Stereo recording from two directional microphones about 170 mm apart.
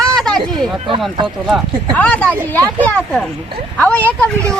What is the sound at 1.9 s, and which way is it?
Speech, 10° left (ahead or behind).